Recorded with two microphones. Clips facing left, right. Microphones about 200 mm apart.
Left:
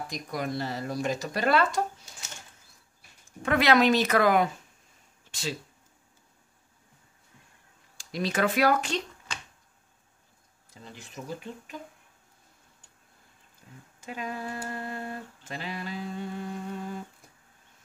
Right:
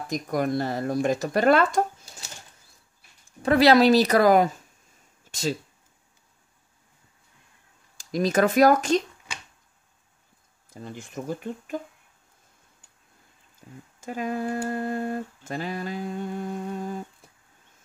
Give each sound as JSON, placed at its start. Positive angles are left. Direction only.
{"t": 0.1, "sound": "humming", "side_deg": -50}
{"t": 3.3, "sound": "speech", "side_deg": -35}
{"t": 8.0, "sound": "humming", "side_deg": -45}
{"t": 9.3, "sound": "finger snapping", "side_deg": -10}
{"t": 10.7, "sound": "humming", "side_deg": -50}
{"t": 14.0, "sound": "humming", "side_deg": -45}